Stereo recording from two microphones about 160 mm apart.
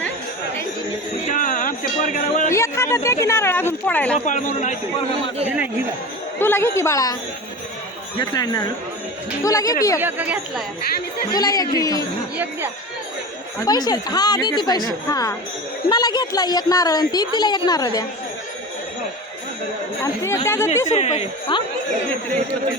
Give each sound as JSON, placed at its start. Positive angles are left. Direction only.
{"t": 1.3, "sound": "a sound", "side_deg": 55}
{"t": 2.5, "sound": "speech", "side_deg": 15}
{"t": 4.3, "sound": "speech", "side_deg": 50}
{"t": 6.4, "sound": "a woman's voice", "side_deg": 15}
{"t": 8.2, "sound": "a woman's voice", "side_deg": 25}
{"t": 10.0, "sound": "speech", "side_deg": -10}
{"t": 11.3, "sound": "a woman's voice", "side_deg": 20}
{"t": 13.7, "sound": "a woman's voice", "side_deg": 25}
{"t": 20.2, "sound": "a woman's voice", "side_deg": 15}
{"t": 20.8, "sound": "speech", "side_deg": 45}